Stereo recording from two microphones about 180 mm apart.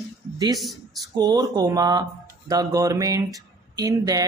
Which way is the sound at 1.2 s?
25° right (ahead or behind).